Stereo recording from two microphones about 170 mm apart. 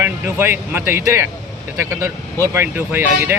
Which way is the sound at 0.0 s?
10° right (ahead or behind).